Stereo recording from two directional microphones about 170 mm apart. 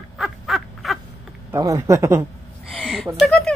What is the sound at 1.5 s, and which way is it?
Speech, 20° right (ahead or behind).